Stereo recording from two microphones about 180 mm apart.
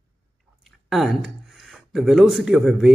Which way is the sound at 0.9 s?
Centre (ahead or behind).